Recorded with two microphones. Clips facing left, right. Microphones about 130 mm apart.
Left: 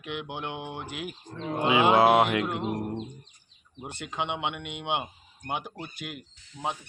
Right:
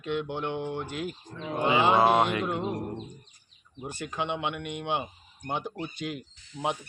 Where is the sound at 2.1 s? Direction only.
90° left.